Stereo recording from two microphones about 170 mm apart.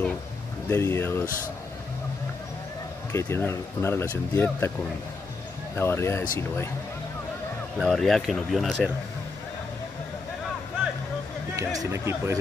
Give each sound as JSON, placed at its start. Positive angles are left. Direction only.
{"t": 0.7, "sound": "speech", "side_deg": 15}
{"t": 3.1, "sound": "speech", "side_deg": 15}
{"t": 5.8, "sound": "speech", "side_deg": 15}
{"t": 7.8, "sound": "speech", "side_deg": 0}
{"t": 11.5, "sound": "speech", "side_deg": -20}